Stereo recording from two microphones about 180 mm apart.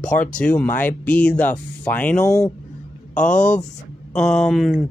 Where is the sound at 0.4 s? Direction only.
5° left (ahead or behind).